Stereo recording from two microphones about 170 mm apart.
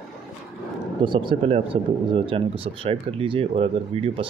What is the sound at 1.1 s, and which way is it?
Speech, 30° right (ahead or behind).